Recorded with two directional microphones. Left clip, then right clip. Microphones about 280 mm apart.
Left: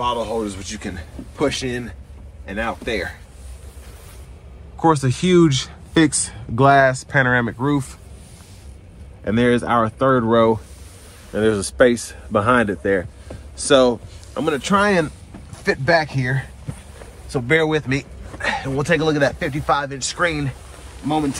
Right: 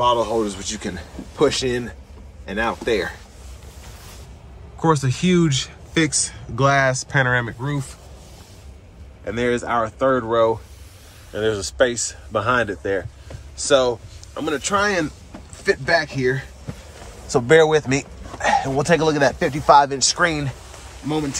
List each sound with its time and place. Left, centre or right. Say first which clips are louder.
0.0 s speech: right 3 dB; centre
4.8 s speech: left 2 dB; centre
6.9 s speech: left 2 dB; centre
7.6 s speech: left 7 dB; centre
9.2 s speech: left 4 dB; left
17.3 s speech: right 4 dB; centre
21.1 s speech: left 3 dB; centre